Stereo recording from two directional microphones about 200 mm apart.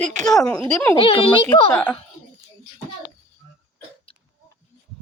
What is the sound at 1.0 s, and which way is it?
Speech, 25° left (ahead or behind).